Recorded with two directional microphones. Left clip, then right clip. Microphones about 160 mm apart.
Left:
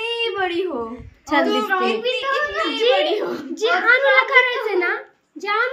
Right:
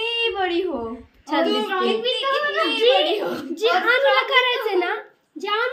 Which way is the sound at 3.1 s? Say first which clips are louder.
Left 1 dB; 40° right (ahead or behind).